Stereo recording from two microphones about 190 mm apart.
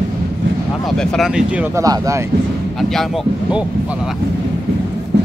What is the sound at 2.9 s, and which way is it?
Speech, centre (ahead or behind).